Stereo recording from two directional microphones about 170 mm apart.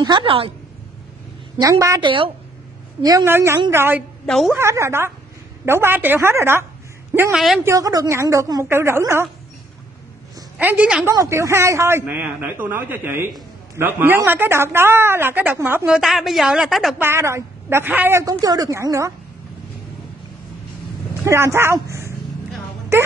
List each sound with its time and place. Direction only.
0.0 s a woman's voice: 30° right (ahead or behind)
1.6 s a woman's voice: 20° right (ahead or behind)
4.3 s a woman's voice: centre (ahead or behind)
4.6 s a man's voice: 15° right (ahead or behind)
7.3 s a woman's voice: centre (ahead or behind)
7.6 s a man's voice: 20° right (ahead or behind)
10.6 s a man's voice: 10° right (ahead or behind)
11.1 s a man's voice: 15° right (ahead or behind)
17.0 s a man's voice: 15° right (ahead or behind)
21.2 s a man's voice: 15° right (ahead or behind)